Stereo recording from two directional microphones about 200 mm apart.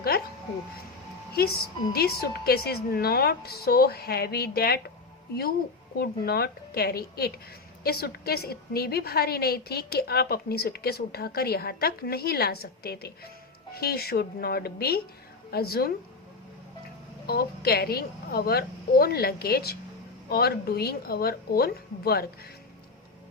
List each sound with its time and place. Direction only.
1.3 s a woman's voice: 50° left (ahead or behind)
17.2 s a woman's voice: 50° left (ahead or behind)